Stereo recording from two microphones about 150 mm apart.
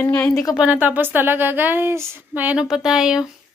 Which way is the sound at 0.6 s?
10° right (ahead or behind).